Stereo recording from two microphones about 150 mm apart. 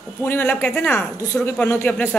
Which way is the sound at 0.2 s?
15° left (ahead or behind).